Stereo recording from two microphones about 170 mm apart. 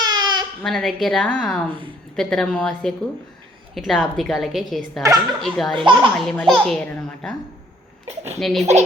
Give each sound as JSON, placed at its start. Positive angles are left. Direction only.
{"t": 0.0, "sound": "baby cry", "side_deg": -25}
{"t": 0.6, "sound": "a child's voice", "side_deg": 0}
{"t": 5.7, "sound": "speech", "side_deg": -30}
{"t": 6.1, "sound": "a child's voice", "side_deg": 0}
{"t": 8.4, "sound": "a child's voice", "side_deg": 0}